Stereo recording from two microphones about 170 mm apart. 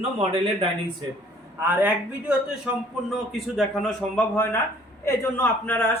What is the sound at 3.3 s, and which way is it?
A man's voice, 5° left (ahead or behind).